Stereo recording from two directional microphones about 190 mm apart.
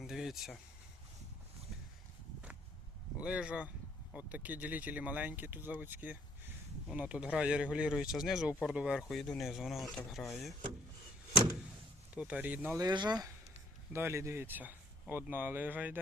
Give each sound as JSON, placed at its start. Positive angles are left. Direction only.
{"t": 0.0, "sound": "a sound", "side_deg": 0}
{"t": 3.2, "sound": "speech", "side_deg": -5}
{"t": 12.1, "sound": "speech", "side_deg": -5}